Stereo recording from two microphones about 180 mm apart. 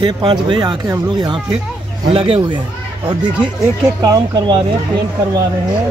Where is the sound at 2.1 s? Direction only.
30° right (ahead or behind).